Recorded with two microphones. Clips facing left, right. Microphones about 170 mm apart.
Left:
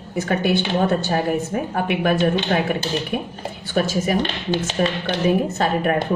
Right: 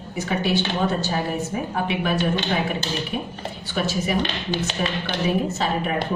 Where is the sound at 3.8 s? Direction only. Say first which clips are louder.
Left 4 dB; 45° left (ahead or behind).